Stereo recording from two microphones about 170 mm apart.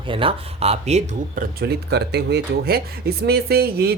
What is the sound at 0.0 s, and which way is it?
Speech, 30° right (ahead or behind).